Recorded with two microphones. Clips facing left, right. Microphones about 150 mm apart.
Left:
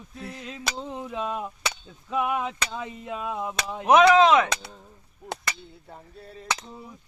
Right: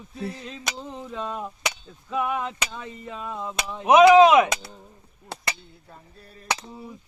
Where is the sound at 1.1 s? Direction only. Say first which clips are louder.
Even; 5° left (ahead or behind).